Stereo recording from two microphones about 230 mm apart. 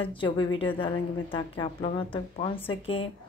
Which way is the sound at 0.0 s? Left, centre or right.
Left.